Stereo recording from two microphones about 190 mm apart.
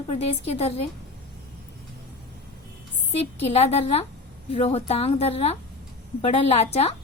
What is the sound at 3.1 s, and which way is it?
A woman's voice, 35° left (ahead or behind).